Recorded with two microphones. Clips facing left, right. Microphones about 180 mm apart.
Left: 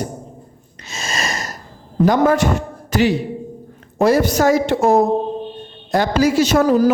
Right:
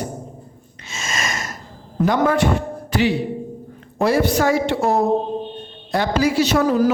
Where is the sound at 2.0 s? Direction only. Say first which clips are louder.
Left 3 dB; 40° left (ahead or behind).